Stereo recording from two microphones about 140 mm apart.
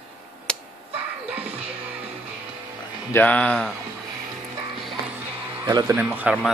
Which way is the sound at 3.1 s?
10° left (ahead or behind).